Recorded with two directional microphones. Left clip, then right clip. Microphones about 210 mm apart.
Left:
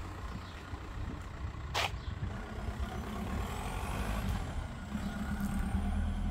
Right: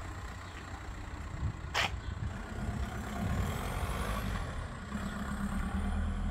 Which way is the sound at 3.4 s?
45° right (ahead or behind).